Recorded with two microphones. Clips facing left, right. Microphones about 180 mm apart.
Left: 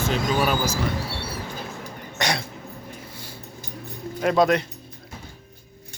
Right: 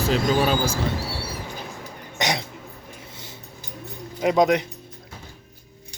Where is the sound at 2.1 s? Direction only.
20° right (ahead or behind).